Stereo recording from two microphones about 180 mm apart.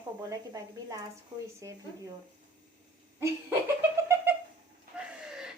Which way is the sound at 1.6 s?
20° right (ahead or behind).